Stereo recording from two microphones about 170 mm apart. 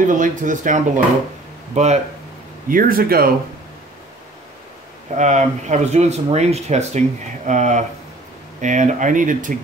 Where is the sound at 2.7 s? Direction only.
55° right (ahead or behind).